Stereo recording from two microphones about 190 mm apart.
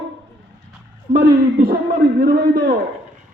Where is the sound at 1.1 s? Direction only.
50° right (ahead or behind).